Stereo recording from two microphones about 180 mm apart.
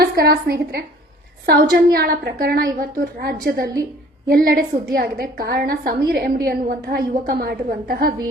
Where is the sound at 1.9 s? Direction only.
55° right (ahead or behind).